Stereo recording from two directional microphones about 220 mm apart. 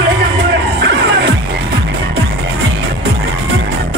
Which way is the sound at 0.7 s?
50° right (ahead or behind).